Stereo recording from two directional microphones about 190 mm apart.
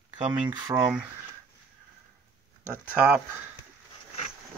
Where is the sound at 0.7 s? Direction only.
5° right (ahead or behind).